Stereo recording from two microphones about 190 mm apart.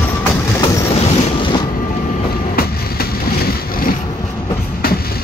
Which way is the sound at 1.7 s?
45° left (ahead or behind).